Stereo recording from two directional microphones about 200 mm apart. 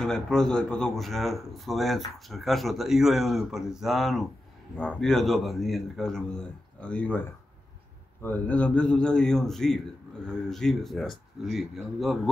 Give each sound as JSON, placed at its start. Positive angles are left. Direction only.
{"t": 0.0, "sound": "speech", "side_deg": 5}